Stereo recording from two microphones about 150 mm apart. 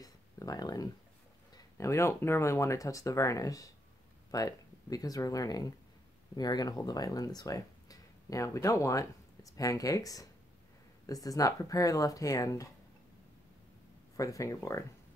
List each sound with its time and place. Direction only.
0.0 s a sound: 25° left (ahead or behind)
1.5 s speech: 20° left (ahead or behind)
14.1 s speech: 20° left (ahead or behind)